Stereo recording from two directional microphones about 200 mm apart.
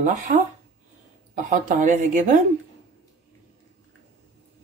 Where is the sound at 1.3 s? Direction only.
40° right (ahead or behind).